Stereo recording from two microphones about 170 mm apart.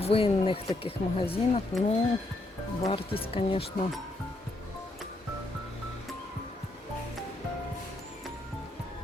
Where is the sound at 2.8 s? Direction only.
30° left (ahead or behind).